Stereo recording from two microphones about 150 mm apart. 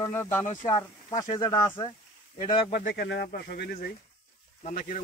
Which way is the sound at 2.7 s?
90° left.